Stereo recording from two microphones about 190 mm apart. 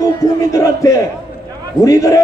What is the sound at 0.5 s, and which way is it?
A man's voice, 15° left (ahead or behind).